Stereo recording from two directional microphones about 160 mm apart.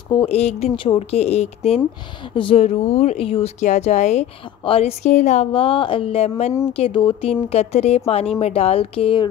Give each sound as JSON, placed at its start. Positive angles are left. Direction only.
{"t": 0.1, "sound": "speech", "side_deg": 35}